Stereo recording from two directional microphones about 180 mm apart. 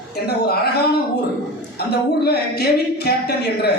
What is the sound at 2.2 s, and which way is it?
A man's voice, 60° left (ahead or behind).